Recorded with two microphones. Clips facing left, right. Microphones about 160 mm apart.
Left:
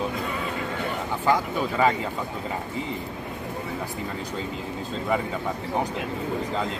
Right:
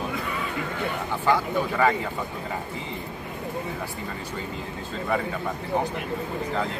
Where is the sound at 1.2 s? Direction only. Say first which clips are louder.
Even; 15° left (ahead or behind).